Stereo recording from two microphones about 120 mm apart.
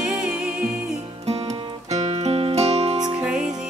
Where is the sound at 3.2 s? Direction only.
5° right (ahead or behind).